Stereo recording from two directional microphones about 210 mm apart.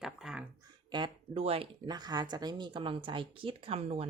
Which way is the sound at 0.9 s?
25° right (ahead or behind).